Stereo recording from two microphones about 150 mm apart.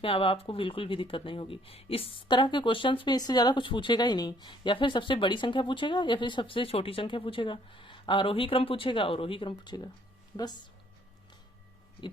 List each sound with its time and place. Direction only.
0.0 s speech: 35° left (ahead or behind)